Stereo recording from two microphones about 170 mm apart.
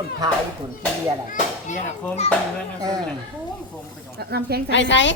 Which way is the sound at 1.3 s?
45° left (ahead or behind).